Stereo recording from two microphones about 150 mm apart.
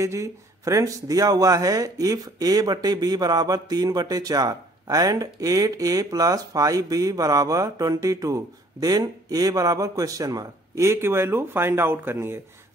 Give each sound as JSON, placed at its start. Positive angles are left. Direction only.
{"t": 0.0, "sound": "speech", "side_deg": -20}